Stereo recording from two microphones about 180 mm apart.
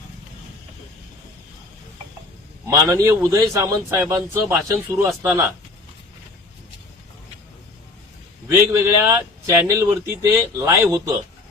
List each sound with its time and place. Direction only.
2.6 s speech: 20° right (ahead or behind)
8.4 s speech: 15° right (ahead or behind)